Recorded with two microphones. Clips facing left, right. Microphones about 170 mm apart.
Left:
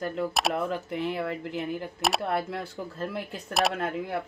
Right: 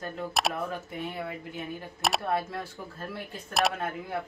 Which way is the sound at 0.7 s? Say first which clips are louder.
Left 6 dB; 90° left.